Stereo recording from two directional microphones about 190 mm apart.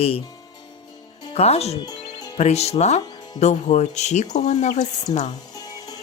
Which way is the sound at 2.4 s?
35° left (ahead or behind).